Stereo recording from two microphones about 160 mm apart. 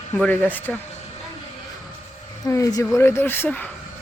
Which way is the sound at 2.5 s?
20° left (ahead or behind).